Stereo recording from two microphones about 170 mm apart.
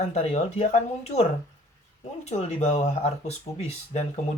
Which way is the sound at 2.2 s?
40° left (ahead or behind).